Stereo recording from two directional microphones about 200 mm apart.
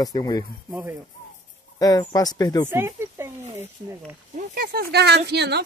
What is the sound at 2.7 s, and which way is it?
Speech, 10° right (ahead or behind).